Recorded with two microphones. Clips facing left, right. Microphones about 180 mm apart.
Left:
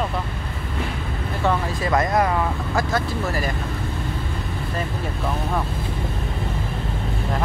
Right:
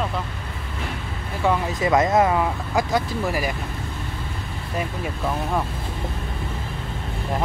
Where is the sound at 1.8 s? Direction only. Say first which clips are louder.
Right 3 dB; 20° right (ahead or behind).